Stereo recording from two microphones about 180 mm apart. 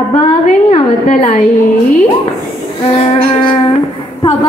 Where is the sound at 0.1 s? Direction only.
35° left (ahead or behind).